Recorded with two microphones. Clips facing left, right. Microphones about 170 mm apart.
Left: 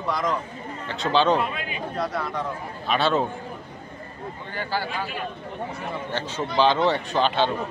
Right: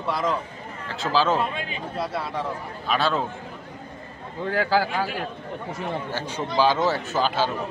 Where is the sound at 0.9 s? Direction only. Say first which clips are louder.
Left 2 dB; centre (ahead or behind).